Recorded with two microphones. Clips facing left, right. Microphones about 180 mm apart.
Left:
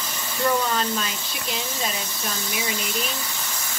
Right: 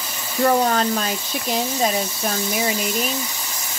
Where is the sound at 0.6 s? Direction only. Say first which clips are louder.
Right 5 dB; 40° right (ahead or behind).